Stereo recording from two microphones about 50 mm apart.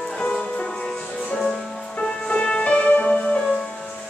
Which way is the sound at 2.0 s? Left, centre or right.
Left.